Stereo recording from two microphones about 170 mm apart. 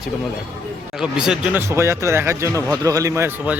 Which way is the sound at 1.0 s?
5° right (ahead or behind).